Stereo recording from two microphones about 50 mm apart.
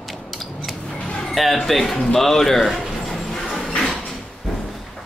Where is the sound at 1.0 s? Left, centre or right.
Centre.